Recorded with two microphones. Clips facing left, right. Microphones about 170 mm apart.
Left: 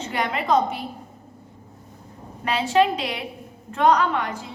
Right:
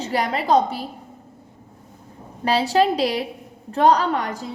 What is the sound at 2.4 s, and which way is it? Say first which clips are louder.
A woman's voice: right 2 dB; 35° right (ahead or behind).